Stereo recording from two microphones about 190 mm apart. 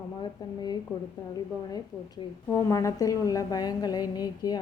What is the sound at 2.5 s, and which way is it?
A woman's voice, 15° left (ahead or behind).